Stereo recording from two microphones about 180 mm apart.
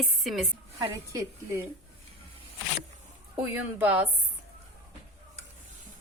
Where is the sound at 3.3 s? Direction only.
10° right (ahead or behind).